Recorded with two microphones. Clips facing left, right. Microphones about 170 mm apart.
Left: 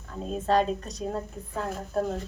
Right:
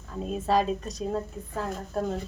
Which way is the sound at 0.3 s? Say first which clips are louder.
Left 1 dB; 5° right (ahead or behind).